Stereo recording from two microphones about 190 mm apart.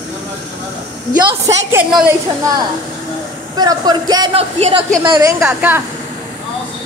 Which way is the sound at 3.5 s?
20° right (ahead or behind).